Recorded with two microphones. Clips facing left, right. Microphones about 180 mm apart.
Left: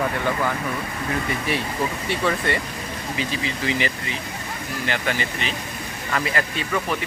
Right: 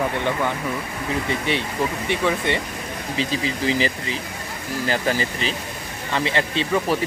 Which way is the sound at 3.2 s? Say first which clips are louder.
Right 4 dB; 30° right (ahead or behind).